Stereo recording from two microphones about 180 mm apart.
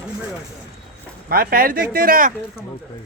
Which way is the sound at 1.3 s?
55° right (ahead or behind).